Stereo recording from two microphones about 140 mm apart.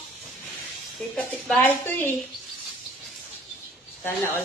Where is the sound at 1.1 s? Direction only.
10° left (ahead or behind).